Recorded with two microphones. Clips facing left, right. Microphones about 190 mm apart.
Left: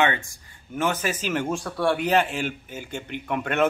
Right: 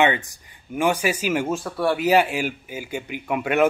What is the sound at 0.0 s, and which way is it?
A man's voice, 15° right (ahead or behind).